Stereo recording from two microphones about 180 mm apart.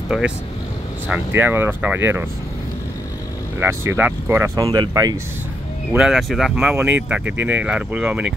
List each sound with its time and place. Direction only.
0.1 s speech: 5° right (ahead or behind)
3.5 s speech: 15° right (ahead or behind)
5.9 s speech: centre (ahead or behind)